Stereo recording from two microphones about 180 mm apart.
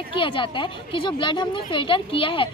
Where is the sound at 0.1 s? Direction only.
30° left (ahead or behind).